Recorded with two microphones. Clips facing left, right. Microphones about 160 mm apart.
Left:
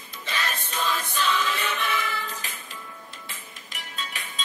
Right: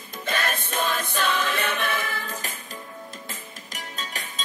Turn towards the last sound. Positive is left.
turn(degrees=-40)  # may be behind; listen again after turning